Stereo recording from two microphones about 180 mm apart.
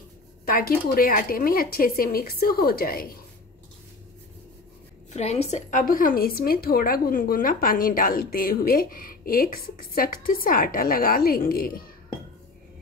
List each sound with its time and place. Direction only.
0.5 s speech: 55° left (ahead or behind)
5.1 s speech: 35° left (ahead or behind); by 11.7 s 55° left (ahead or behind)